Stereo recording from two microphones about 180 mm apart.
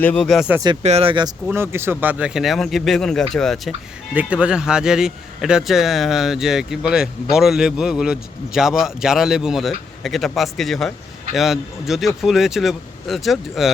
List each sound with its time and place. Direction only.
0.0 s speech: 5° left (ahead or behind)
0.8 s speech: 35° right (ahead or behind)
1.5 s speech: 15° right (ahead or behind)